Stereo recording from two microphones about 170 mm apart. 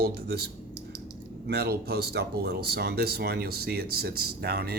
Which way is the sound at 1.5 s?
70° right (ahead or behind).